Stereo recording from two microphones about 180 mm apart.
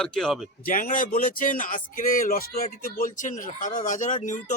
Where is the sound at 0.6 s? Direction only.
50° left (ahead or behind).